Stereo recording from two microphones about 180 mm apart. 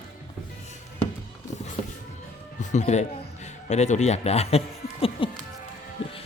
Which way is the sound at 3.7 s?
40° left (ahead or behind).